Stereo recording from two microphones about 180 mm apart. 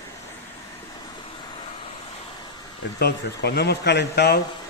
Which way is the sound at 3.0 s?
65° left (ahead or behind).